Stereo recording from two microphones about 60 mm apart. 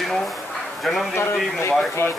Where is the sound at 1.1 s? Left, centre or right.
Left.